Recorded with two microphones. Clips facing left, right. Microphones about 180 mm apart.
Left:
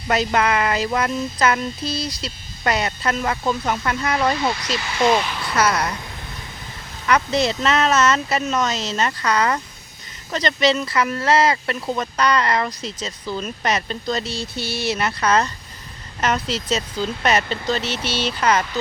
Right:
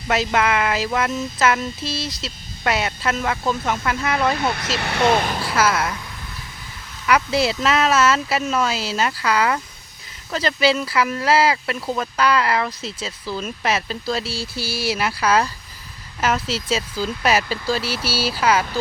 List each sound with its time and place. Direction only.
0.1 s speech: centre (ahead or behind)
4.4 s speech: 55° right (ahead or behind)
5.5 s a woman's voice: 5° right (ahead or behind)
7.1 s speech: 5° right (ahead or behind)